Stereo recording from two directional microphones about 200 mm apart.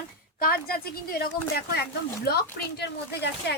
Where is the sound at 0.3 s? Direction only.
50° left (ahead or behind).